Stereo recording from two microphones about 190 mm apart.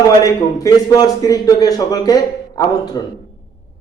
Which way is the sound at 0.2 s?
20° left (ahead or behind).